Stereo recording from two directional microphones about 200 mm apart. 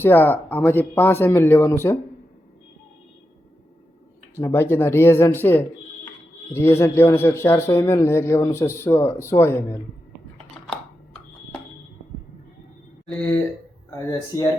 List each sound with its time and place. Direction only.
0.0 s a man's voice: 10° left (ahead or behind)
4.4 s a man's voice: 10° left (ahead or behind)
13.9 s a man's voice: 15° left (ahead or behind)